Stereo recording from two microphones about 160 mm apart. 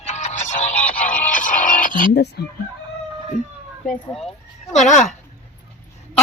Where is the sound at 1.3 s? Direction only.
55° left (ahead or behind); by 2.5 s 90° left.